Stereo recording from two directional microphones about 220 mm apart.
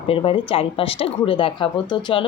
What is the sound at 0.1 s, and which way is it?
Speech, 25° left (ahead or behind).